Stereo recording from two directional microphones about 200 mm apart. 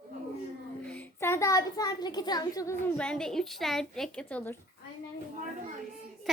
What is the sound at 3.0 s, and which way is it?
A woman's voice, 5° left (ahead or behind).